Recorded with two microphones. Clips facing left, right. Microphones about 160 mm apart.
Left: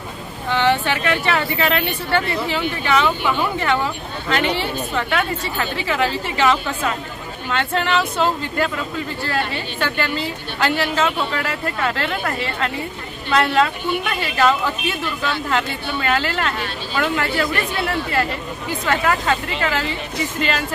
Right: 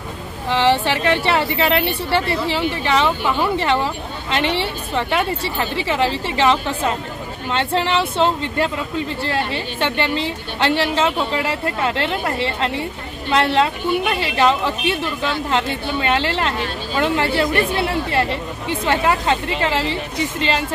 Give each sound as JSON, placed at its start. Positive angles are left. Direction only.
{"t": 0.5, "sound": "speech", "side_deg": -30}